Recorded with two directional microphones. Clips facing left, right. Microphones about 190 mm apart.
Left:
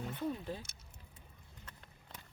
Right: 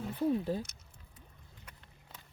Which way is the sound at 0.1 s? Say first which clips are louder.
Right 10 dB; 30° right (ahead or behind).